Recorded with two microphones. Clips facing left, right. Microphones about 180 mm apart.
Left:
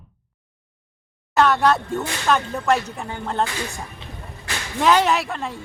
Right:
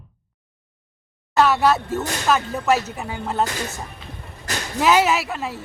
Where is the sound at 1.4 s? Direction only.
5° right (ahead or behind).